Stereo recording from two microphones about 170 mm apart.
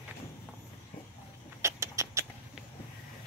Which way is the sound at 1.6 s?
15° right (ahead or behind).